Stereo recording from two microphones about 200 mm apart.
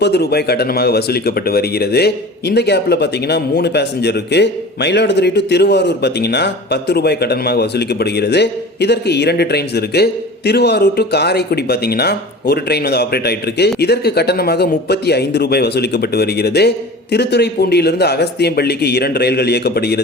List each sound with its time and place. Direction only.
0.0 s speech: 55° left (ahead or behind)